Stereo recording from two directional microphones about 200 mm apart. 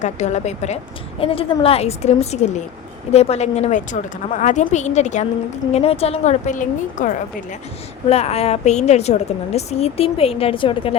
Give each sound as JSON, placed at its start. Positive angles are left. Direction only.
{"t": 0.0, "sound": "a woman's voice", "side_deg": 35}